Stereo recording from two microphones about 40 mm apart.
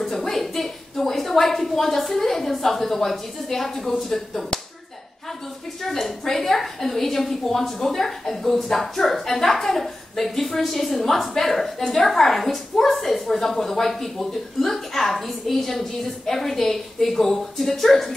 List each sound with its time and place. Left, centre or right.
0.0 s a woman's voice: centre
5.9 s a woman's voice: centre